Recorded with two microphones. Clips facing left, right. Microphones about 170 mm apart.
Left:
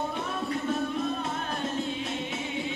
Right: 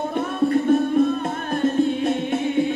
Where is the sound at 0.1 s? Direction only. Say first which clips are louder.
Right 11 dB; 55° right (ahead or behind).